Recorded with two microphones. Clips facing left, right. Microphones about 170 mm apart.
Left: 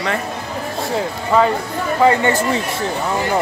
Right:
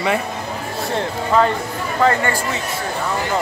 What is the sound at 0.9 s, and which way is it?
Speech, 5° left (ahead or behind).